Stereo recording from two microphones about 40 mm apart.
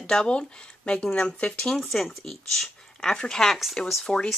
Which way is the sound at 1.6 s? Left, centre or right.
Centre.